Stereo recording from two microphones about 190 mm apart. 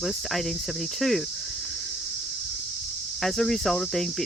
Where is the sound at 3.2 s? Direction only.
Centre (ahead or behind).